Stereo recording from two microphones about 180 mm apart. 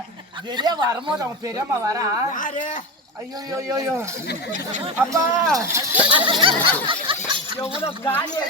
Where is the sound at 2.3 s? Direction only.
45° left (ahead or behind).